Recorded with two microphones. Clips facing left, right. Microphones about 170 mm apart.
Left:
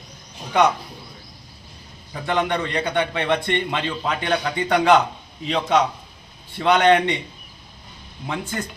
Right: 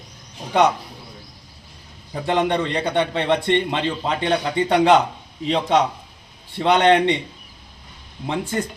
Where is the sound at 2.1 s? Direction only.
30° right (ahead or behind).